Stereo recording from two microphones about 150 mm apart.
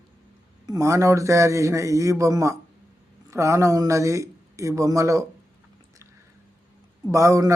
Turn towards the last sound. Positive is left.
turn(degrees=-20)  # may be behind; listen again after turning